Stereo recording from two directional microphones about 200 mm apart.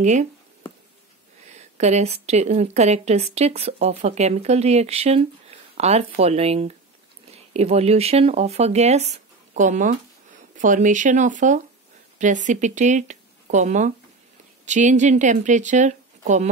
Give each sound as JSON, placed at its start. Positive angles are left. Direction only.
{"t": 0.0, "sound": "speech", "side_deg": -35}
{"t": 1.5, "sound": "a sound", "side_deg": -35}
{"t": 2.2, "sound": "speech", "side_deg": -35}